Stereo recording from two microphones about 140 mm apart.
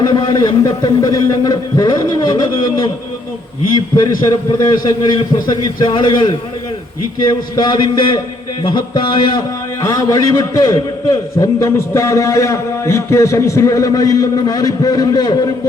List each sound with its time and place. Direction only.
0.0 s a man's voice: 35° left (ahead or behind)
10.0 s a man's voice: 25° left (ahead or behind)